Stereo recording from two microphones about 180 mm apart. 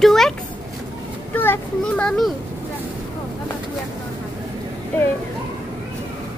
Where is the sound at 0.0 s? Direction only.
Centre (ahead or behind).